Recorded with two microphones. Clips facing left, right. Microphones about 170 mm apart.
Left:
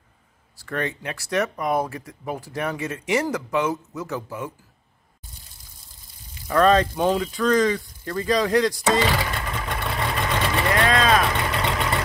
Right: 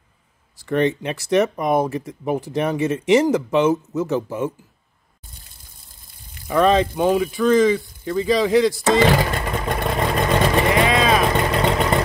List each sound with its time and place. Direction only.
0.6 s speech: 20° right (ahead or behind)
6.4 s speech: 10° right (ahead or behind)
9.0 s vehicle: 50° right (ahead or behind)
10.7 s vehicle: 10° right (ahead or behind)
11.3 s vehicle: 40° right (ahead or behind)